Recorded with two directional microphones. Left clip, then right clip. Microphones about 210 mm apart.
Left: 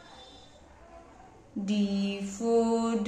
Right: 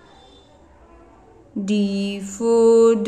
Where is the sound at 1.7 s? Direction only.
35° right (ahead or behind).